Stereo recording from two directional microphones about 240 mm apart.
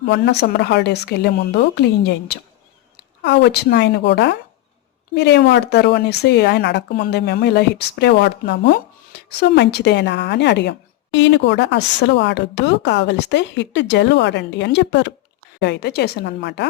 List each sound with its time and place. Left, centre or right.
0.1 s a woman's voice: left